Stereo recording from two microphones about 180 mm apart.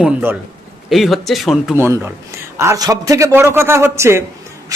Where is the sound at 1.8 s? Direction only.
15° right (ahead or behind).